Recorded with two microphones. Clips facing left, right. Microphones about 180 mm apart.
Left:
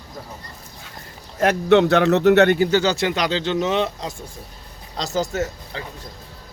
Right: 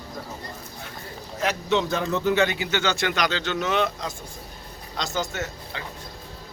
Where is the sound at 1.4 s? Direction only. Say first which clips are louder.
Left 9 dB; 60° left (ahead or behind).